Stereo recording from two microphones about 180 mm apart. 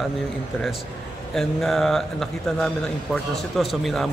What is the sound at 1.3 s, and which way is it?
Speech, centre (ahead or behind).